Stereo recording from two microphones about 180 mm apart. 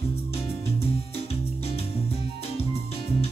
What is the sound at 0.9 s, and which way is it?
Music, 35° left (ahead or behind).